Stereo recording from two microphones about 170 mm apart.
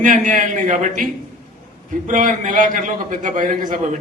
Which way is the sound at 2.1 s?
50° right (ahead or behind).